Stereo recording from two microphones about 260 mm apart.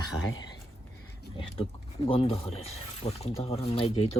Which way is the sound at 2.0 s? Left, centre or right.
Left.